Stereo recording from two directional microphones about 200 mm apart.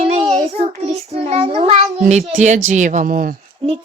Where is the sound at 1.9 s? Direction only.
30° right (ahead or behind).